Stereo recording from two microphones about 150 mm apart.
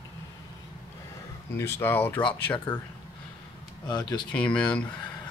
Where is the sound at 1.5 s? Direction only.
15° left (ahead or behind).